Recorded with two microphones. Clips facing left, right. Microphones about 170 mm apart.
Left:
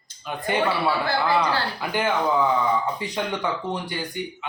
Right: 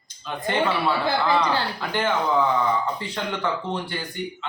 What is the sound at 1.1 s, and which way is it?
Speech, 20° right (ahead or behind).